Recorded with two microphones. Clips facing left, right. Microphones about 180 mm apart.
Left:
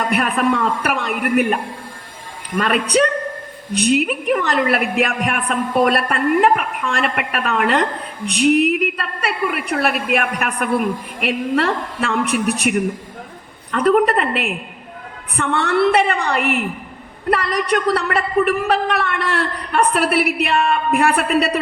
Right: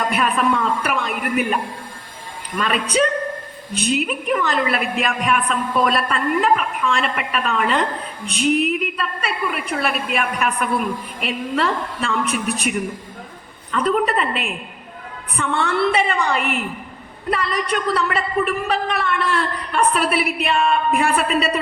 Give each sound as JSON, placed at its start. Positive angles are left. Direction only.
{"t": 0.0, "sound": "a woman's voice", "side_deg": 60}